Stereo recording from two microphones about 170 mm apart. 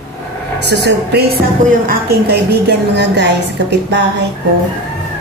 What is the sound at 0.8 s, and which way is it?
Speech, 70° right (ahead or behind).